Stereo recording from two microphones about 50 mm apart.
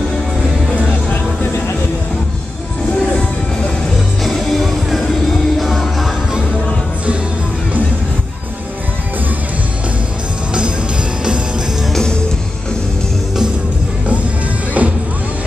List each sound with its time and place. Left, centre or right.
4.2 s music: centre
11.9 s music: centre
14.8 s music: right